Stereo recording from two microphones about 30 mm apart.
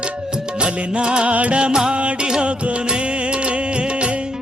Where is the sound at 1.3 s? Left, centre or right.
Right.